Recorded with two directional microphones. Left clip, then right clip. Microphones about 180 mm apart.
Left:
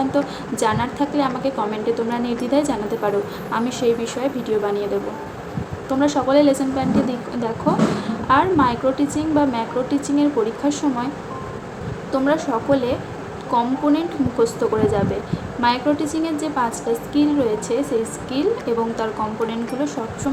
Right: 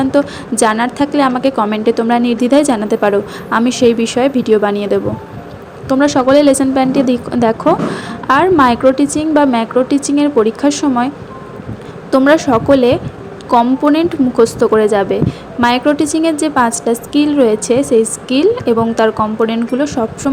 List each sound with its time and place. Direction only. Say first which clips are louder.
0.1 s a woman's voice: right 8 dB; 40° right (ahead or behind)
12.1 s a woman's voice: right 10 dB; 45° right (ahead or behind)